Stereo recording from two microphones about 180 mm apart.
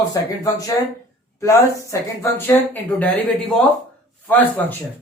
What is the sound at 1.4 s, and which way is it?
Speech, 15° left (ahead or behind).